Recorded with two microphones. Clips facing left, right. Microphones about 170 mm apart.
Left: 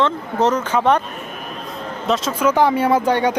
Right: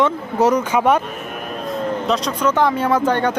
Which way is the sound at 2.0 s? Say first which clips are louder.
Left 4 dB; centre (ahead or behind).